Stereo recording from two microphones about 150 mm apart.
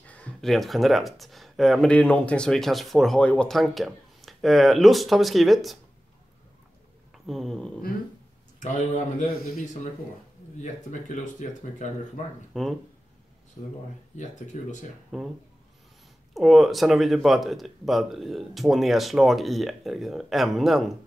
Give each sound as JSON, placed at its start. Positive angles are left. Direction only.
{"t": 0.0, "sound": "speech", "side_deg": 10}
{"t": 7.2, "sound": "speech", "side_deg": 0}
{"t": 8.5, "sound": "speech", "side_deg": 55}
{"t": 10.6, "sound": "speech", "side_deg": 55}
{"t": 12.5, "sound": "speech", "side_deg": 0}
{"t": 14.1, "sound": "speech", "side_deg": 55}
{"t": 15.0, "sound": "speech", "side_deg": 0}
{"t": 16.3, "sound": "speech", "side_deg": 0}